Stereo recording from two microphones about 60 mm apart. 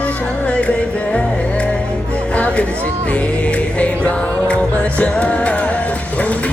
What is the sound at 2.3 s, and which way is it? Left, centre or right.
Music, left.